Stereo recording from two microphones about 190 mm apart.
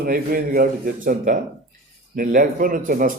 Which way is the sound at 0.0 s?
50° right (ahead or behind).